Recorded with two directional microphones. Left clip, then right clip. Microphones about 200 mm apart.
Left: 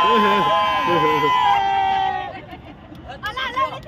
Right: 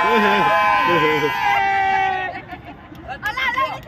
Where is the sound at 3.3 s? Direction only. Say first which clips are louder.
Right 2 dB; 25° left (ahead or behind).